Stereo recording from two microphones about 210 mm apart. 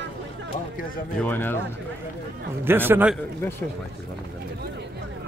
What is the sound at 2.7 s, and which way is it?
Speech, 10° right (ahead or behind).